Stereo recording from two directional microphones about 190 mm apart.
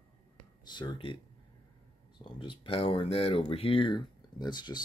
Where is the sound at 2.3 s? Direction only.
25° left (ahead or behind).